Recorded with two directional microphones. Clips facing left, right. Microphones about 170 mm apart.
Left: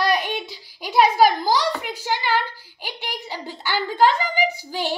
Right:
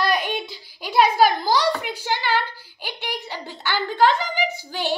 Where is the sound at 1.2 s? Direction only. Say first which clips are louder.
Even; 10° left (ahead or behind).